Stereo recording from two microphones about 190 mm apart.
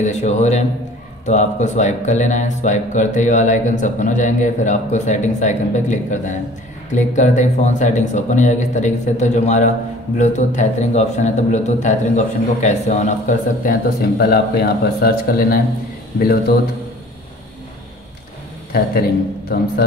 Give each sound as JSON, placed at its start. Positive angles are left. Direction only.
{"t": 0.0, "sound": "speech", "side_deg": 40}
{"t": 19.5, "sound": "speech", "side_deg": 55}